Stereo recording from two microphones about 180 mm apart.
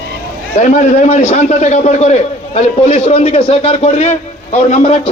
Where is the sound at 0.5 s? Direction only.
40° left (ahead or behind).